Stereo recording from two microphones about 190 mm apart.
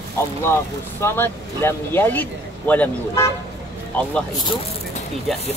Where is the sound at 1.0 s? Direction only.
10° left (ahead or behind).